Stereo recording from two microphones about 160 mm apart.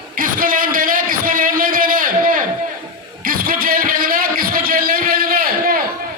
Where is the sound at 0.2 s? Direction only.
60° right (ahead or behind).